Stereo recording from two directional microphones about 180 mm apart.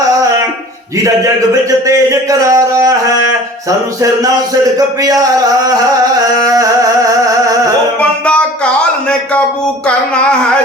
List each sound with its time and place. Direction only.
1.9 s speech: 20° right (ahead or behind)
6.4 s music: 20° right (ahead or behind)
8.2 s a sound: 5° left (ahead or behind)